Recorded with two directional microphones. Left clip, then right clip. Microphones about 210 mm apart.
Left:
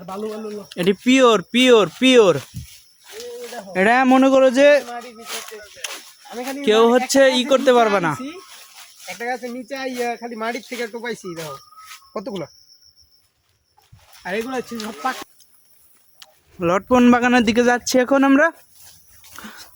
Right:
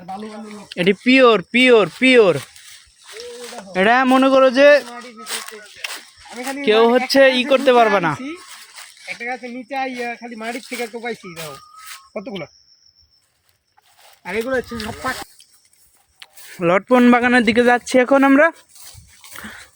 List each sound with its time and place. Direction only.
0.7 s speech: 5° right (ahead or behind)
3.1 s snake: 55° right (ahead or behind)
3.7 s speech: 5° left (ahead or behind)
4.9 s a sound: 50° right (ahead or behind)
6.5 s speech: 10° left (ahead or behind)
8.4 s a sound: 55° right (ahead or behind)
9.2 s speech: 10° left (ahead or behind)
10.8 s speech: 15° left (ahead or behind)
14.2 s speech: 10° left (ahead or behind)
14.5 s speech: centre (ahead or behind)
16.2 s speech: 5° right (ahead or behind)
19.3 s a sound: centre (ahead or behind)